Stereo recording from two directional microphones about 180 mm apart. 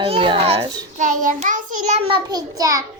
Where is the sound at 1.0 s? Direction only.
45° right (ahead or behind).